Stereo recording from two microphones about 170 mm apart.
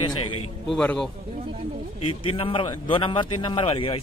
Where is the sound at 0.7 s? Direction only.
5° left (ahead or behind).